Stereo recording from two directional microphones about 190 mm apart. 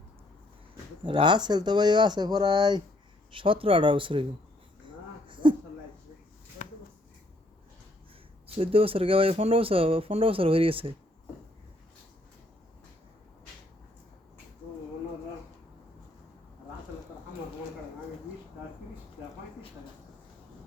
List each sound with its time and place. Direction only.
1.0 s speech: 25° right (ahead or behind)
4.9 s wheeze: 25° right (ahead or behind)
6.6 s a sound: 40° left (ahead or behind)
8.5 s speech: 30° right (ahead or behind)